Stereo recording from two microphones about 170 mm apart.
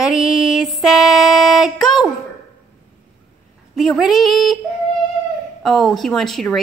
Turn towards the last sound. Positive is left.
turn(degrees=0)  # may be behind; listen again after turning